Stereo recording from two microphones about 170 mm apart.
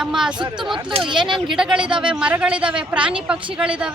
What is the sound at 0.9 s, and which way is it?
Speech, 30° right (ahead or behind).